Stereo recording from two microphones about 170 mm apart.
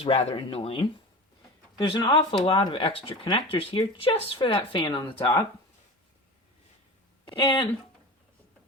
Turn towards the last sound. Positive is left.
turn(degrees=25)  # may be behind; listen again after turning